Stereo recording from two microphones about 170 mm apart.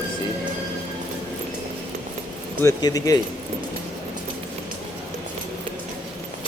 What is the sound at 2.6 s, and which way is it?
Speech, 20° left (ahead or behind).